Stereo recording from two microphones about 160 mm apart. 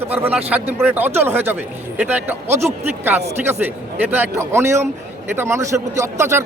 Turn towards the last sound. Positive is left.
turn(degrees=-15)  # may be behind; listen again after turning